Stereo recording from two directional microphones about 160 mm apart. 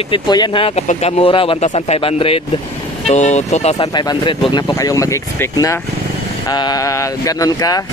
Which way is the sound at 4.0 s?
30° left (ahead or behind).